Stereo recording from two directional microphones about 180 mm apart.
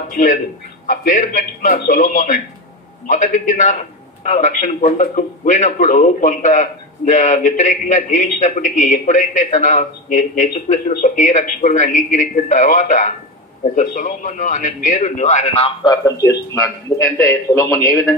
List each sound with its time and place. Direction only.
0.1 s a man's voice: 50° left (ahead or behind); by 18.1 s 20° left (ahead or behind)